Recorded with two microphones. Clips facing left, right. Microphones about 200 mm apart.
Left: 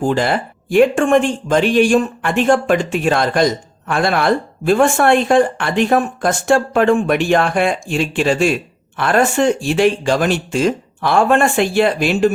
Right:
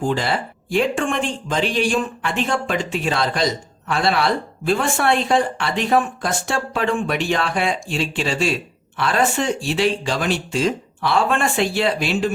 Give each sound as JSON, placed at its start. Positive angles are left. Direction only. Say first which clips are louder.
{"t": 0.0, "sound": "speech", "louder": "left 5 dB", "side_deg": 50}